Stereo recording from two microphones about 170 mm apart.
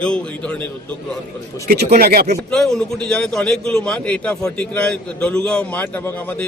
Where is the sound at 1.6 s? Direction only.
65° right (ahead or behind).